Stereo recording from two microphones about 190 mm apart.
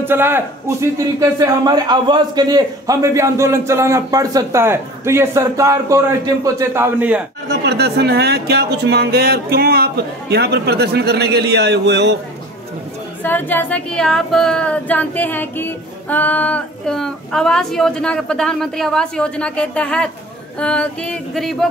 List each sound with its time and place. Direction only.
0.1 s a man's voice: 10° right (ahead or behind)
7.4 s speech: 60° right (ahead or behind)
13.2 s female singing: 10° left (ahead or behind)